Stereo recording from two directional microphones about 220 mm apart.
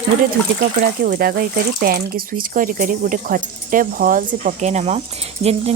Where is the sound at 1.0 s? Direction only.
45° right (ahead or behind).